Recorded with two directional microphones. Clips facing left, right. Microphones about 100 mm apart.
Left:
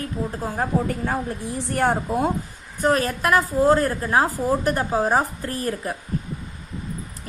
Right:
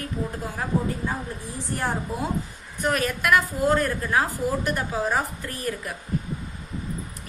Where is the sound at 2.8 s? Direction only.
35° left (ahead or behind).